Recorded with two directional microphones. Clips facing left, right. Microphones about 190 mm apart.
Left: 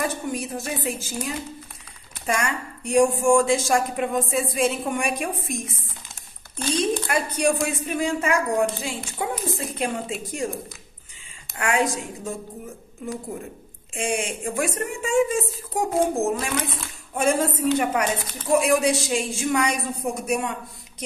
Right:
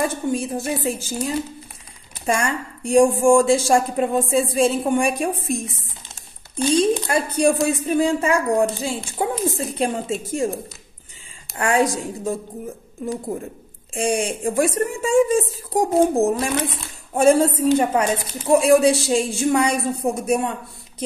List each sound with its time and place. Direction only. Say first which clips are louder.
0.0 s a woman's voice: right 5 dB; 30° right (ahead or behind)
7.1 s a woman's voice: right 4 dB; 30° right (ahead or behind)
11.5 s a woman's voice: right 4 dB; 35° right (ahead or behind)
13.9 s a woman's voice: right 5 dB; 35° right (ahead or behind)